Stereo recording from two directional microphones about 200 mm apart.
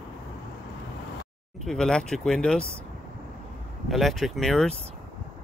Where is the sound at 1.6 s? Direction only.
5° left (ahead or behind).